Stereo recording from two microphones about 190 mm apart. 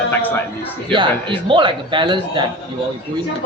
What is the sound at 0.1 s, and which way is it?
Speech, 10° left (ahead or behind).